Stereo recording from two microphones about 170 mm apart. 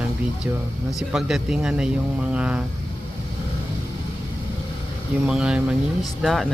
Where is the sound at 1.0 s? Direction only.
Centre (ahead or behind).